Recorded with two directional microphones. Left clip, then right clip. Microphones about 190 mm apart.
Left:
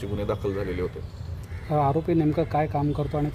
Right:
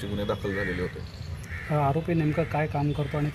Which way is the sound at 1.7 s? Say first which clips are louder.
Left 3 dB; 45° left (ahead or behind).